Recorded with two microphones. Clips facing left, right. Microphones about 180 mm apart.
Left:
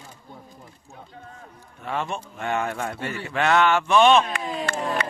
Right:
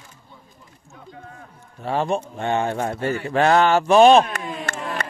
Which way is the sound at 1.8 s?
35° right (ahead or behind).